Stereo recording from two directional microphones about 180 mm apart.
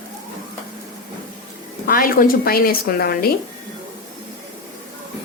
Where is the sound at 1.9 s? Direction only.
55° left (ahead or behind).